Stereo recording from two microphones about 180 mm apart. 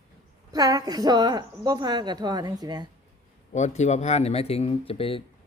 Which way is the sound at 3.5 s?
40° left (ahead or behind).